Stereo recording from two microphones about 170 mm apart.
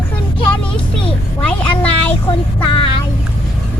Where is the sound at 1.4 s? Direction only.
10° left (ahead or behind).